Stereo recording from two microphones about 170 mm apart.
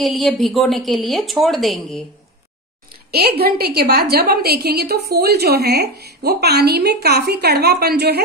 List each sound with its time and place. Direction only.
0.0 s a woman's voice: centre (ahead or behind)
3.1 s a woman's voice: 70° right (ahead or behind)